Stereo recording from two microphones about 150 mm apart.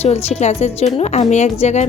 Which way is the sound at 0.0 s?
45° left (ahead or behind).